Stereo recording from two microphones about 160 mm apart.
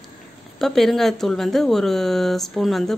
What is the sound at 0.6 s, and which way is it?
Speech, centre (ahead or behind).